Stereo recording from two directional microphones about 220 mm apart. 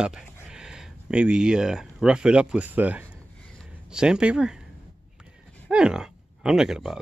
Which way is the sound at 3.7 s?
5° right (ahead or behind).